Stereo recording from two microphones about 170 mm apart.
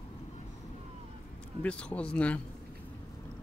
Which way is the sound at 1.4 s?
5° left (ahead or behind).